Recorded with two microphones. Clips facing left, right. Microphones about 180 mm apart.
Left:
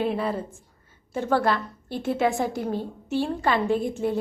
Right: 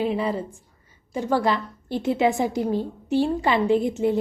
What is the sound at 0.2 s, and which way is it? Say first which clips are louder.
A woman's voice: right 2 dB; 15° right (ahead or behind).